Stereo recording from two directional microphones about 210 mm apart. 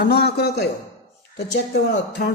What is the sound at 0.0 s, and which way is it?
Speech, 50° left (ahead or behind).